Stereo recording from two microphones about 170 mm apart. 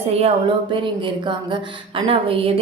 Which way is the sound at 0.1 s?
35° right (ahead or behind).